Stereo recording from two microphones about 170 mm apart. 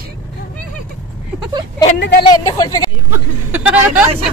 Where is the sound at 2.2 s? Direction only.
20° left (ahead or behind).